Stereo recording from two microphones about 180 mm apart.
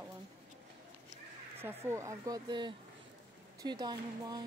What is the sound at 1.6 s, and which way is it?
A woman's voice, 15° right (ahead or behind).